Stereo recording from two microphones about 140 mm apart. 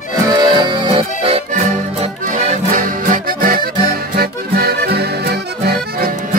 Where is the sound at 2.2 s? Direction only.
60° right (ahead or behind); by 4.7 s 90° right.